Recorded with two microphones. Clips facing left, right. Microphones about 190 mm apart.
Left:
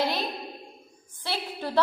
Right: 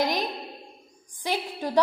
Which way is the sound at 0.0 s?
15° right (ahead or behind).